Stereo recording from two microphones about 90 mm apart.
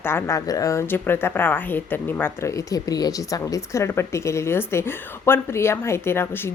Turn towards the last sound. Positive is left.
turn(degrees=25)  # may be behind; listen again after turning